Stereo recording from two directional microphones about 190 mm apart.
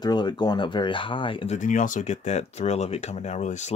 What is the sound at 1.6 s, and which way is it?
Speech, 40° left (ahead or behind).